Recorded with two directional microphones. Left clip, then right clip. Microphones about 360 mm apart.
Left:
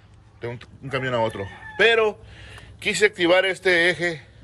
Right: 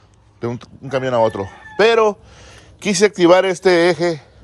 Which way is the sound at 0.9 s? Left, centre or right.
Centre.